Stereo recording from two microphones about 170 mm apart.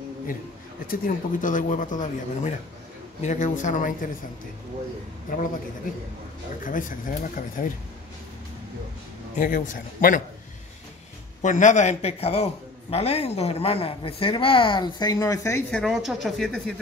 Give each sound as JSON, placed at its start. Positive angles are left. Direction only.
{"t": 0.8, "sound": "speech", "side_deg": 50}
{"t": 6.6, "sound": "speech", "side_deg": 50}
{"t": 9.4, "sound": "speech", "side_deg": 50}
{"t": 11.4, "sound": "speech", "side_deg": 45}
{"t": 15.7, "sound": "speech", "side_deg": 0}